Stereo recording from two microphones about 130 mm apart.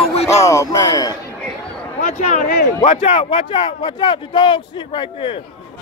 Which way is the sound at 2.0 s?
70° left (ahead or behind).